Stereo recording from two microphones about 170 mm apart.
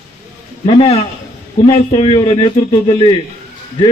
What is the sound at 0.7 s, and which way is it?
A man's voice, 35° left (ahead or behind).